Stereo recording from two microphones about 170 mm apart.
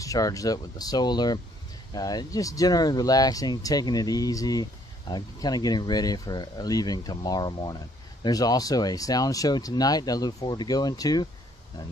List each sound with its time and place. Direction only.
0.0 s speech: 20° left (ahead or behind)